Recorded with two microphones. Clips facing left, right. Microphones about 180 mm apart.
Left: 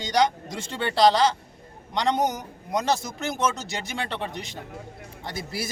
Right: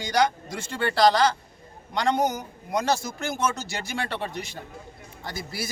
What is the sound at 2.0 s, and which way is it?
A man's voice, 20° left (ahead or behind).